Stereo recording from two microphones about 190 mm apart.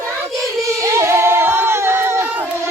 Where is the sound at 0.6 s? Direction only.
15° right (ahead or behind).